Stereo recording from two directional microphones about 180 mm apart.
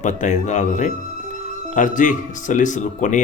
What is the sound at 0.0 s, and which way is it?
Speech, 40° left (ahead or behind).